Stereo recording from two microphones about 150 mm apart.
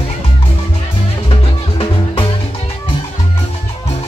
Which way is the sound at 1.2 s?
40° left (ahead or behind).